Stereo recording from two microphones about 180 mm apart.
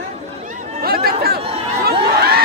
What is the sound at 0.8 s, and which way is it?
Chatter, 55° right (ahead or behind).